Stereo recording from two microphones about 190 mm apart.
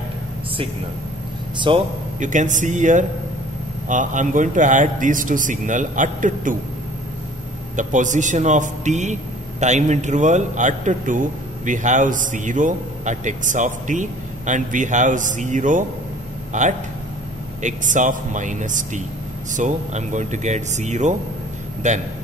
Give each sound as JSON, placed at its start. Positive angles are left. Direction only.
{"t": 1.7, "sound": "a man's voice", "side_deg": -25}
{"t": 2.1, "sound": "a man's voice", "side_deg": -40}
{"t": 7.7, "sound": "a man's voice", "side_deg": -40}